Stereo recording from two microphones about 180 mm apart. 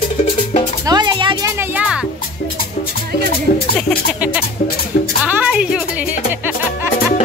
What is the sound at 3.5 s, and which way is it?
Music, 55° left (ahead or behind).